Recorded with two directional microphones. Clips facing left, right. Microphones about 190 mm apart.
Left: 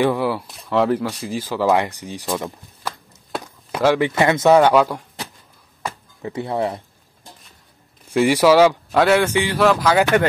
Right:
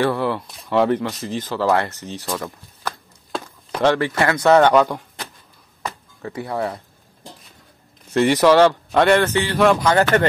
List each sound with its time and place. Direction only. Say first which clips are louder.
0.0 s speech: left 1 dB; 10° left (ahead or behind)
4.6 s a man's voice: even; 5° left (ahead or behind)
6.2 s speech: left 2 dB; 25° left (ahead or behind)
8.1 s a man's voice: even; 10° left (ahead or behind)